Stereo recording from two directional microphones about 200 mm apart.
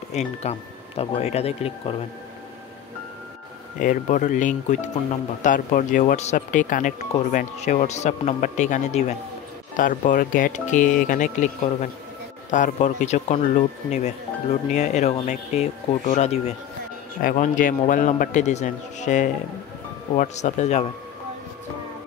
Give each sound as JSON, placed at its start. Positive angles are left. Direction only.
{"t": 0.1, "sound": "speech", "side_deg": 35}
{"t": 3.8, "sound": "speech", "side_deg": 40}
{"t": 17.2, "sound": "speech", "side_deg": 45}